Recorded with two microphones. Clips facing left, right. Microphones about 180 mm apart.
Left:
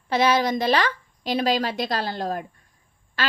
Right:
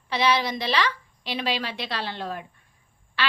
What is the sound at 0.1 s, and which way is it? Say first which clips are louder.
A woman's voice: left 4 dB; 45° left (ahead or behind).